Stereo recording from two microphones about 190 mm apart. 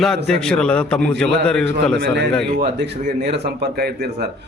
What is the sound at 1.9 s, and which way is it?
A man's voice, 65° right (ahead or behind).